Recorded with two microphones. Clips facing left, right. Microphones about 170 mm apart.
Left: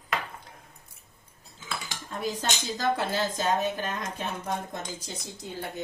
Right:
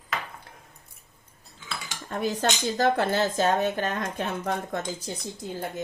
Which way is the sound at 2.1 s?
60° right (ahead or behind).